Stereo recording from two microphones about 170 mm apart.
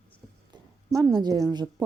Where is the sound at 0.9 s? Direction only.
20° right (ahead or behind).